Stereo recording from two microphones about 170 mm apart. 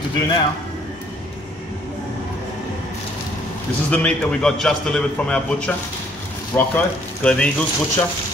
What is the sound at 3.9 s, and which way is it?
A man's voice, 5° left (ahead or behind).